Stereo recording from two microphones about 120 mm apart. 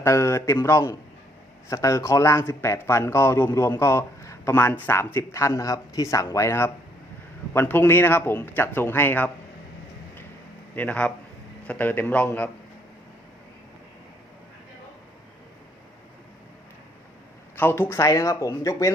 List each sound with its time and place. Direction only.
0.0 s a man's voice: 25° left (ahead or behind)
10.8 s speech: 10° left (ahead or behind)
17.6 s a man's voice: 20° left (ahead or behind)